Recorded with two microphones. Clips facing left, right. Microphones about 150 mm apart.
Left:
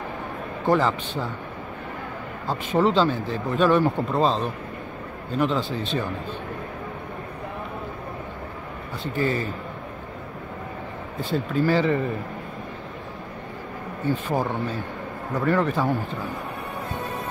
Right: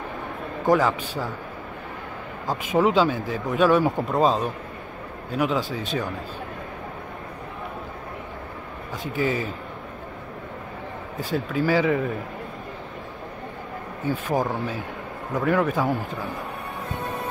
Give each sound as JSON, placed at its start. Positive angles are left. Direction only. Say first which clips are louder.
{"t": 0.7, "sound": "speech", "louder": "right 1 dB", "side_deg": -10}
{"t": 2.4, "sound": "speech", "louder": "even", "side_deg": -15}
{"t": 9.2, "sound": "a man's voice", "louder": "even", "side_deg": -90}
{"t": 11.5, "sound": "speech", "louder": "even", "side_deg": -5}
{"t": 14.0, "sound": "speech", "louder": "even", "side_deg": -10}